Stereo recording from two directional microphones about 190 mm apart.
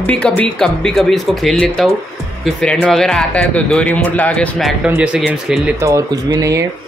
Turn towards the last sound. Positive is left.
turn(degrees=-20)  # may be behind; listen again after turning